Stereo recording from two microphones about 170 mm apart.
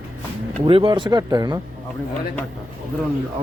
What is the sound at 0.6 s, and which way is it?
Speech, 30° right (ahead or behind).